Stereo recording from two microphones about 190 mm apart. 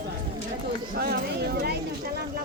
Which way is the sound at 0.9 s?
60° right (ahead or behind).